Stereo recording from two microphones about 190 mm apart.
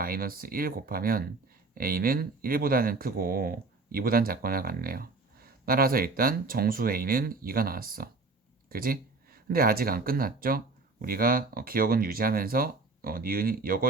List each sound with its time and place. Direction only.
0.0 s speech: 50° right (ahead or behind)